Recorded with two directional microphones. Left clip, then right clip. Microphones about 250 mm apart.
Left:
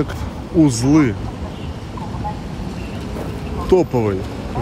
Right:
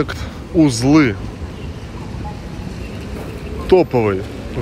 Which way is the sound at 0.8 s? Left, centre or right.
Centre.